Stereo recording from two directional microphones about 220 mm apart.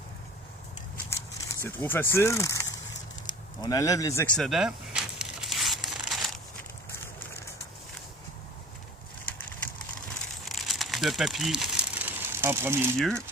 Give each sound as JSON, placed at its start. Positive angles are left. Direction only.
{"t": 1.5, "sound": "speech", "side_deg": 10}
{"t": 4.4, "sound": "crumpling", "side_deg": 0}
{"t": 10.4, "sound": "crumpling", "side_deg": 0}
{"t": 13.0, "sound": "speech", "side_deg": 5}